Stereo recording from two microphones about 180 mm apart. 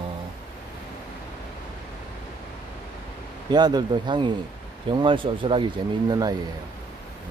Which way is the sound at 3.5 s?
25° right (ahead or behind).